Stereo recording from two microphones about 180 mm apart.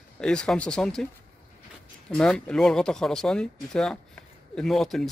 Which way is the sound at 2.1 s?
5° left (ahead or behind).